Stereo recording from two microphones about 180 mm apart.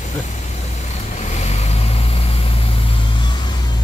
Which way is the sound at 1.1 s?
40° left (ahead or behind).